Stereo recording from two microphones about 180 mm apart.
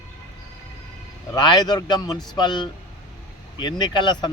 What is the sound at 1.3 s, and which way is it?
Speech, 25° left (ahead or behind).